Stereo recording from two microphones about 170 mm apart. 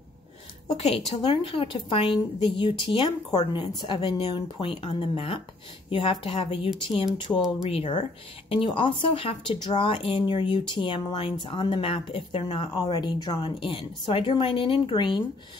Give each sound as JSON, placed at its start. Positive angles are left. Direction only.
{"t": 0.7, "sound": "a woman's voice", "side_deg": 40}
{"t": 7.3, "sound": "speech", "side_deg": 15}
{"t": 7.7, "sound": "a woman's voice", "side_deg": 35}